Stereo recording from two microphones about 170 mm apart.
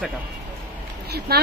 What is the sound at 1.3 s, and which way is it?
Speech, 70° right (ahead or behind).